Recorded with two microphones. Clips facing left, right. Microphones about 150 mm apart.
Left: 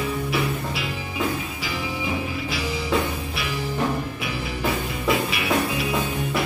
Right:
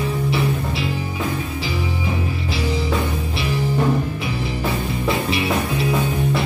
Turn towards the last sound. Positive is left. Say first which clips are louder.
# right 2 dB
turn(degrees=-25)  # may be behind; listen again after turning